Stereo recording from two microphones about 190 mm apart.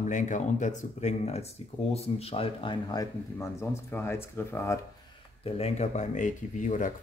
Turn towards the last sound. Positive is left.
turn(degrees=40)  # may be behind; listen again after turning